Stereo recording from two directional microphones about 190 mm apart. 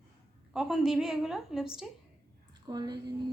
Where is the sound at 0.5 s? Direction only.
Centre (ahead or behind).